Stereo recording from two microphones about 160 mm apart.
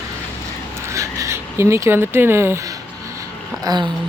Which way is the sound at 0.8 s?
20° right (ahead or behind).